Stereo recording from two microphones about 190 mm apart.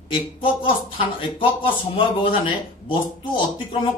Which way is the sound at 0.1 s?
25° left (ahead or behind).